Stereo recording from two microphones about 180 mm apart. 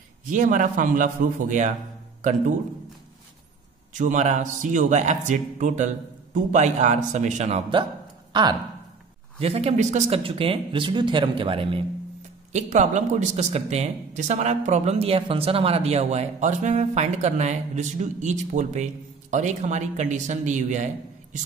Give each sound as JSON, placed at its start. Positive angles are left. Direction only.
{"t": 0.3, "sound": "a man's voice", "side_deg": -45}
{"t": 3.9, "sound": "a man's voice", "side_deg": -45}
{"t": 8.3, "sound": "speech", "side_deg": -25}
{"t": 12.5, "sound": "speech", "side_deg": -40}